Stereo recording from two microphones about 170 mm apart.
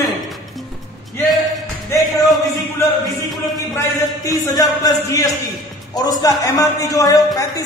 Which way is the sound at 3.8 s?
20° left (ahead or behind).